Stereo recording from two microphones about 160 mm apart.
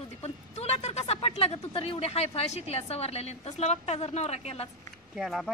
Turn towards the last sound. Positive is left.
turn(degrees=0)  # may be behind; listen again after turning